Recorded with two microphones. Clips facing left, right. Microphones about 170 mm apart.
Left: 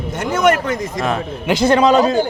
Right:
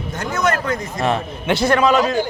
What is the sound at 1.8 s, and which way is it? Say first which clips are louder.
Speech: left 3 dB; 35° left (ahead or behind).